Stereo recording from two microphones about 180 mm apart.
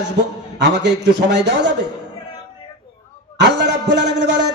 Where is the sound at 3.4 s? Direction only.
75° right (ahead or behind).